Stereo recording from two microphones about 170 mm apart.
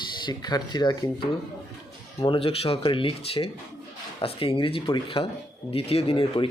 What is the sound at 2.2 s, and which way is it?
Speech, 30° left (ahead or behind).